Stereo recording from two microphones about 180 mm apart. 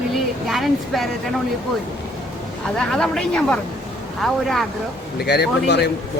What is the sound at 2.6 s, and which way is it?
Speech, 5° left (ahead or behind).